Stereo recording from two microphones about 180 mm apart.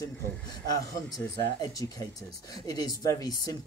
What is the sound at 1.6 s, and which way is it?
Speech, 20° left (ahead or behind).